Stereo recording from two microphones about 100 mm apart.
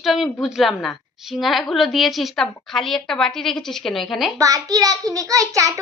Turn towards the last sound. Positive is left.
turn(degrees=-35)  # may be behind; listen again after turning